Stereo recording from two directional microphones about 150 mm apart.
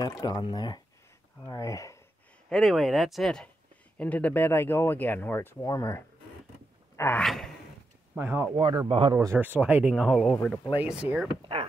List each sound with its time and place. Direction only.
0.0 s speech: 25° left (ahead or behind)
2.5 s speech: centre (ahead or behind); by 6.0 s 20° left (ahead or behind)
7.2 s speech: 5° left (ahead or behind)
8.1 s speech: 10° right (ahead or behind)
8.5 s speech: 35° right (ahead or behind)
9.1 s speech: 20° right (ahead or behind); by 10.7 s 5° left (ahead or behind)
10.8 s speech: 10° right (ahead or behind)